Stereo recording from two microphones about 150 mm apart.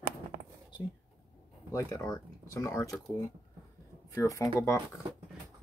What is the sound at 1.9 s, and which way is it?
Speech, 25° left (ahead or behind).